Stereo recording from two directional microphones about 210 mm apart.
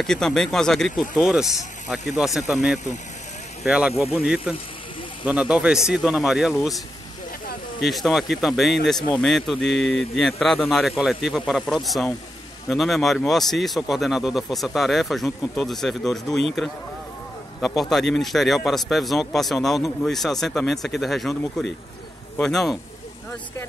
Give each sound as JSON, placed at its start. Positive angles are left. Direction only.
{"t": 0.0, "sound": "a man's voice", "side_deg": 0}
{"t": 7.8, "sound": "a man's voice", "side_deg": 0}